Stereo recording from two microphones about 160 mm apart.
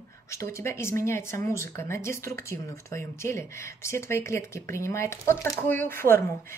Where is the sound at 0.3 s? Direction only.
20° left (ahead or behind).